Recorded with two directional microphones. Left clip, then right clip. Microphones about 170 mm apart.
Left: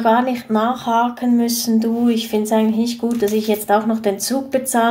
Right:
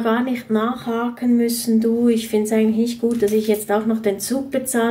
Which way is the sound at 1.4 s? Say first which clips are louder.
Left 1 dB; 45° left (ahead or behind).